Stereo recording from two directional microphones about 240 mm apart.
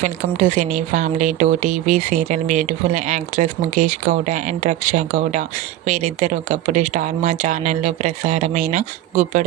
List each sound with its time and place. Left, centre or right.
0.0 s speech: right